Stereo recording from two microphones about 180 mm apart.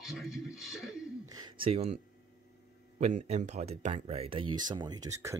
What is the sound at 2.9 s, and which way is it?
Speech, 40° right (ahead or behind).